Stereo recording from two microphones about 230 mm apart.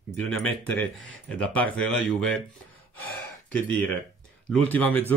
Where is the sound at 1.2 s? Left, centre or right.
Centre.